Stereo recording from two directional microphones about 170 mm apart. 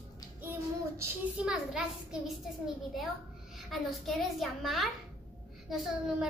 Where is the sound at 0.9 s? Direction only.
5° right (ahead or behind).